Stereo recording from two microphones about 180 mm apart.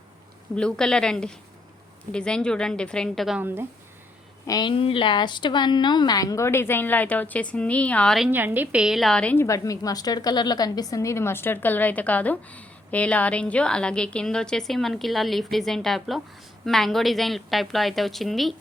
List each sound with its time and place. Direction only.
0.5 s a woman's voice: 5° left (ahead or behind); by 3.7 s 10° right (ahead or behind)
4.4 s a woman's voice: 25° left (ahead or behind); by 8.3 s centre (ahead or behind)
8.3 s a woman's voice: 10° right (ahead or behind)